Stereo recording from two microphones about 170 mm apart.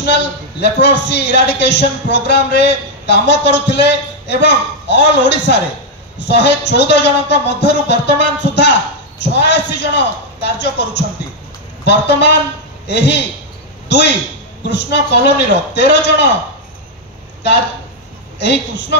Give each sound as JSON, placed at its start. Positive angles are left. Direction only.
{"t": 0.0, "sound": "a man's voice", "side_deg": 80}